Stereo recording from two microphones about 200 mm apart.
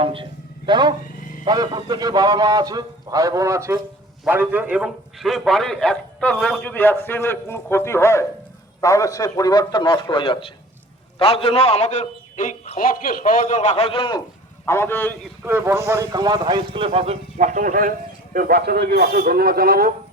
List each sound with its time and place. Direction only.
0.0 s a sound: 25° right (ahead or behind)
1.5 s a man's voice: 20° right (ahead or behind); by 14.2 s 25° left (ahead or behind)
14.6 s a man's voice: 10° left (ahead or behind)
15.4 s a man's voice: 10° right (ahead or behind); by 19.9 s 50° right (ahead or behind)